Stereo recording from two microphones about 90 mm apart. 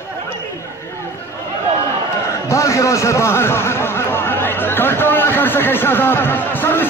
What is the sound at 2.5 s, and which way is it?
Speech, 35° left (ahead or behind).